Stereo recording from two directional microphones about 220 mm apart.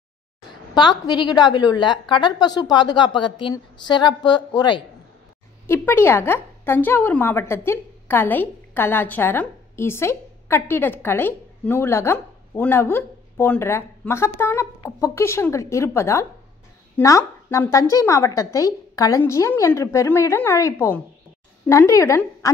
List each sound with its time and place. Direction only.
0.7 s a woman's voice: 20° left (ahead or behind)